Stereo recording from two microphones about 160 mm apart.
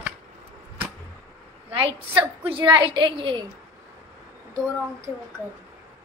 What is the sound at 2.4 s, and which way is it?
A woman's voice, 35° right (ahead or behind).